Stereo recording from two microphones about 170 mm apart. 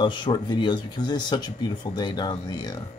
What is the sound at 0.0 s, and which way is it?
Speech, 25° left (ahead or behind).